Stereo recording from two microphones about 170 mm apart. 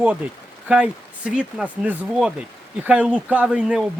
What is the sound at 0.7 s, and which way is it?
Speech, 5° right (ahead or behind).